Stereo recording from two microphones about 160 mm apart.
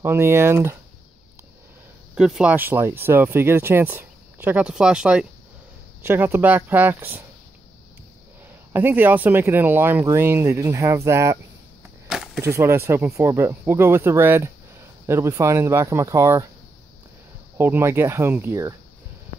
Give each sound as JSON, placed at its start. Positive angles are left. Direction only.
{"t": 0.0, "sound": "speech", "side_deg": -15}
{"t": 2.1, "sound": "speech", "side_deg": -5}
{"t": 8.7, "sound": "speech", "side_deg": -15}
{"t": 12.4, "sound": "speech", "side_deg": -15}
{"t": 17.6, "sound": "speech", "side_deg": -15}